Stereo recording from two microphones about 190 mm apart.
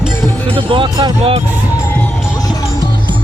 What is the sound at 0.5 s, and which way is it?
Speech, 25° right (ahead or behind).